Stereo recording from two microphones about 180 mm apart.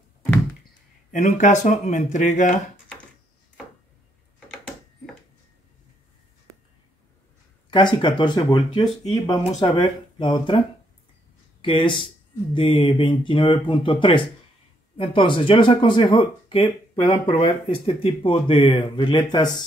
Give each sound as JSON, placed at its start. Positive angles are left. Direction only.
{"t": 1.1, "sound": "speech", "side_deg": 40}
{"t": 7.7, "sound": "speech", "side_deg": 25}
{"t": 11.6, "sound": "speech", "side_deg": 30}